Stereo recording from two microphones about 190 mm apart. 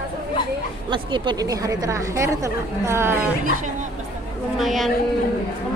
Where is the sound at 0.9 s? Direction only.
25° right (ahead or behind).